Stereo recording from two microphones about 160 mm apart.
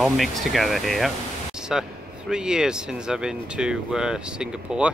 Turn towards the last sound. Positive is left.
turn(degrees=-5)  # may be behind; listen again after turning